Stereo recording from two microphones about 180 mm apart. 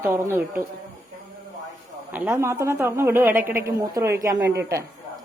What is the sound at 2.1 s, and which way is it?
A woman's voice, 10° right (ahead or behind).